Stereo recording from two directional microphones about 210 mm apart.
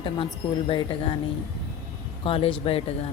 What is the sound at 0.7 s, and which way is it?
Speech, 25° left (ahead or behind).